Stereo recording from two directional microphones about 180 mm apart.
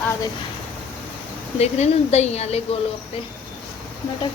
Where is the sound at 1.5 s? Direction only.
40° left (ahead or behind).